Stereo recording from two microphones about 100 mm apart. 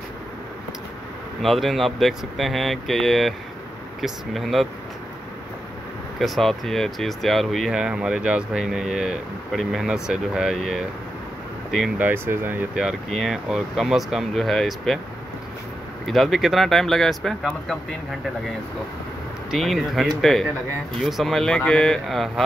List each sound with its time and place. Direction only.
1.4 s speech: centre (ahead or behind)
6.1 s speech: centre (ahead or behind)
12.0 s speech: 20° right (ahead or behind)
12.7 s speech: centre (ahead or behind)
16.1 s speech: centre (ahead or behind)
19.5 s speech: centre (ahead or behind)